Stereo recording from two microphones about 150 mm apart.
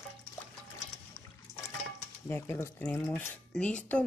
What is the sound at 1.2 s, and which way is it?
Toilet flush, 15° left (ahead or behind).